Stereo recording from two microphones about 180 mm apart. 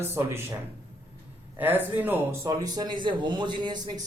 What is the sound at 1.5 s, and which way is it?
A man's voice, 10° right (ahead or behind).